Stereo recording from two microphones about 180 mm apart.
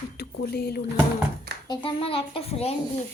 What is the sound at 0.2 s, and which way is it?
Speech, 60° left (ahead or behind).